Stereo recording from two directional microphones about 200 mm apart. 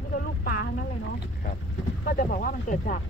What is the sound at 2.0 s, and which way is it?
Speech, 45° left (ahead or behind).